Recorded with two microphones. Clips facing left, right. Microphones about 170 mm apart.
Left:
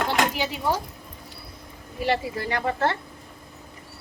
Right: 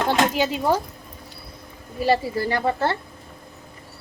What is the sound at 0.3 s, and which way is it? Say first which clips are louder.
Speech: right 5 dB; 50° right (ahead or behind).